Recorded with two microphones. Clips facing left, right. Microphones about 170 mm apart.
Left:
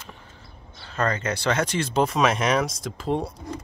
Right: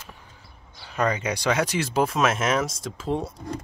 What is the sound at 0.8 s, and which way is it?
Speech, 10° right (ahead or behind).